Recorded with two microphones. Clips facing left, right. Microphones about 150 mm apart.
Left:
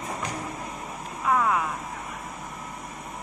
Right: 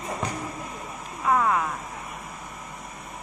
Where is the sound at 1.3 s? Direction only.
Centre (ahead or behind).